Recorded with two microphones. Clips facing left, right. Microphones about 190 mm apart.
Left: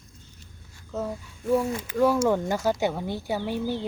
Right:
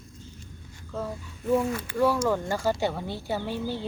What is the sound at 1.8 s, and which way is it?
Speech, 10° left (ahead or behind).